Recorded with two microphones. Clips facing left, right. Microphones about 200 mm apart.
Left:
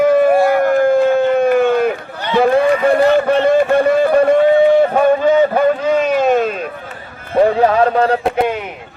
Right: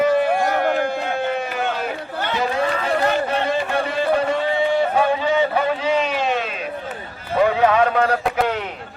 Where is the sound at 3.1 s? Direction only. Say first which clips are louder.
Left 9 dB; 55° left (ahead or behind).